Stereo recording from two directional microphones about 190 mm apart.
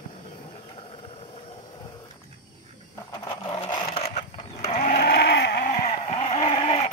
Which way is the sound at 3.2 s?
25° left (ahead or behind).